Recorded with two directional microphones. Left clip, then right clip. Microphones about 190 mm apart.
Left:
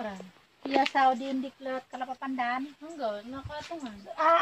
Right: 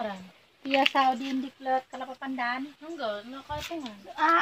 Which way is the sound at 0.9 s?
30° right (ahead or behind).